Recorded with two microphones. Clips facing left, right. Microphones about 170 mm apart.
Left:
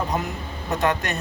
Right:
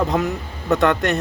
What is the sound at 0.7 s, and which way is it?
Speech, 65° right (ahead or behind).